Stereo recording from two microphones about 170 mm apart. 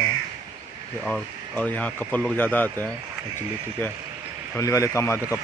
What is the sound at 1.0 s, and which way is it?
Speech, 5° left (ahead or behind).